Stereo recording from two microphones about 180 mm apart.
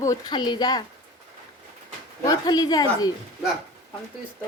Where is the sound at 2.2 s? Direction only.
20° left (ahead or behind).